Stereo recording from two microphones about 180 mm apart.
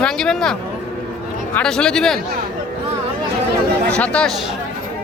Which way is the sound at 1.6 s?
5° left (ahead or behind).